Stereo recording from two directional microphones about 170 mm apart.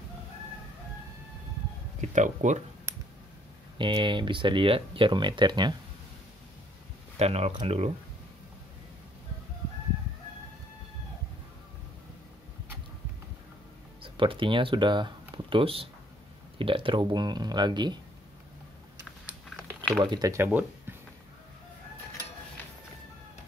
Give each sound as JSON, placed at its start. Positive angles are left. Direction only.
{"t": 2.0, "sound": "speech", "side_deg": -45}
{"t": 3.7, "sound": "speech", "side_deg": -30}
{"t": 7.2, "sound": "speech", "side_deg": -35}
{"t": 14.0, "sound": "speech", "side_deg": -30}
{"t": 20.0, "sound": "speech", "side_deg": -25}